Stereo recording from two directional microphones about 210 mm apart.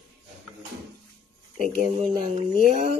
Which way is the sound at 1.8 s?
40° right (ahead or behind).